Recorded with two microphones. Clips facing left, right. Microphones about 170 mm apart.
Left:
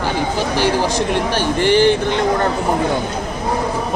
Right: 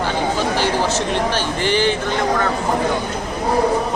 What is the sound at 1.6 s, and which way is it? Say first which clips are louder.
Speech: left 6 dB; 50° left (ahead or behind).